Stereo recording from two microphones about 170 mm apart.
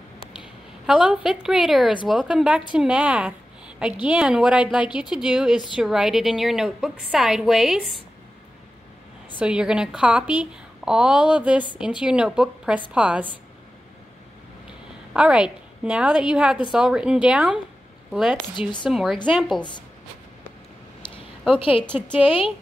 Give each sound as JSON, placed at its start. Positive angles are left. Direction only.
{"t": 0.4, "sound": "a woman's voice", "side_deg": -5}
{"t": 9.4, "sound": "a woman's voice", "side_deg": -5}
{"t": 15.1, "sound": "a woman's voice", "side_deg": -5}
{"t": 18.6, "sound": "a woman's voice", "side_deg": 25}
{"t": 18.9, "sound": "a woman's voice", "side_deg": 0}
{"t": 21.5, "sound": "a woman's voice", "side_deg": 30}